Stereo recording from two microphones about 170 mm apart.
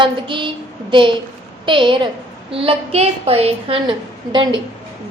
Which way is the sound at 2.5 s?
35° right (ahead or behind).